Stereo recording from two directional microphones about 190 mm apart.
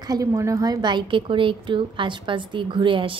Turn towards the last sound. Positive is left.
turn(degrees=-25)  # may be behind; listen again after turning